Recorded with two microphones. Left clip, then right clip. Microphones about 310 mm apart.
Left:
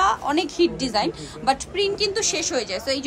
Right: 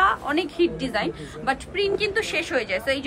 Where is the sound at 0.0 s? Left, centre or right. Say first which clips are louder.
Left 1 dB; centre.